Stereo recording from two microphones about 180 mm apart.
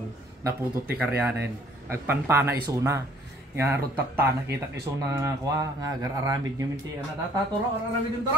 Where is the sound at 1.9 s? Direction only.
10° right (ahead or behind).